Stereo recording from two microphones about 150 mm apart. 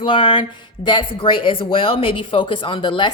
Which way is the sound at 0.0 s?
35° left (ahead or behind).